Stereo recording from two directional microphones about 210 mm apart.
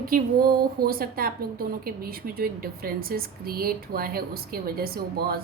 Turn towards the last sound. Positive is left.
turn(degrees=-45)  # may be behind; listen again after turning